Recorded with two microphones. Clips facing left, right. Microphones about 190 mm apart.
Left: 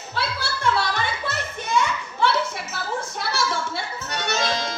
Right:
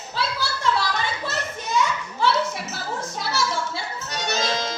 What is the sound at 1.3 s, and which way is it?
Children playing, 55° left (ahead or behind).